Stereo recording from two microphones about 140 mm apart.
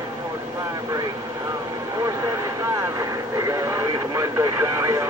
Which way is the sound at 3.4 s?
20° right (ahead or behind).